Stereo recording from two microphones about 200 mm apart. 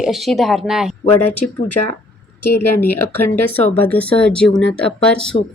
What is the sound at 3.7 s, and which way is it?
Speech, 10° left (ahead or behind).